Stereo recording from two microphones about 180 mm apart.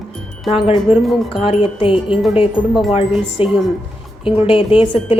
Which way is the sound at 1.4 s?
30° left (ahead or behind).